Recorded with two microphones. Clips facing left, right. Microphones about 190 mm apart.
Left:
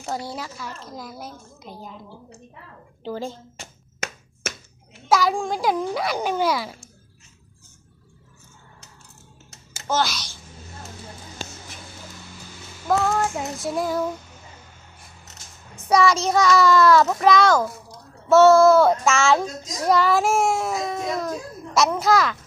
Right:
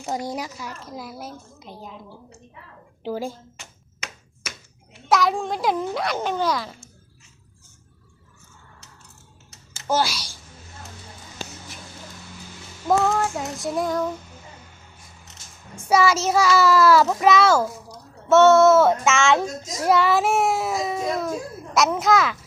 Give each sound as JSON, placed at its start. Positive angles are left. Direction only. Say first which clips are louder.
{"t": 0.0, "sound": "a child's voice", "louder": "right 2 dB", "side_deg": -15}
{"t": 3.0, "sound": "a child's voice", "louder": "right 2 dB", "side_deg": -10}
{"t": 3.6, "sound": "a sound", "louder": "left 6 dB", "side_deg": 45}
{"t": 5.1, "sound": "a child's voice", "louder": "even", "side_deg": 0}
{"t": 9.8, "sound": "a child's voice", "louder": "right 1 dB", "side_deg": -10}
{"t": 13.1, "sound": "a child's voice", "louder": "even", "side_deg": 0}
{"t": 15.8, "sound": "a child's voice", "louder": "even", "side_deg": -5}